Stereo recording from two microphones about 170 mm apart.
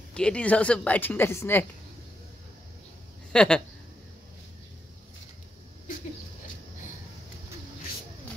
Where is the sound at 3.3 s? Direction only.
5° left (ahead or behind).